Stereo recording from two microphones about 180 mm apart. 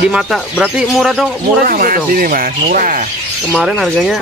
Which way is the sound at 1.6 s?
50° right (ahead or behind).